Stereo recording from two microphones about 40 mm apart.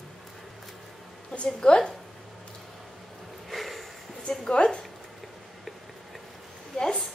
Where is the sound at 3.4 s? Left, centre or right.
Centre.